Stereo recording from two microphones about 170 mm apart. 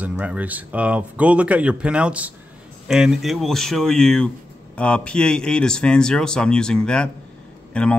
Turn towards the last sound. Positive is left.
turn(degrees=5)  # may be behind; listen again after turning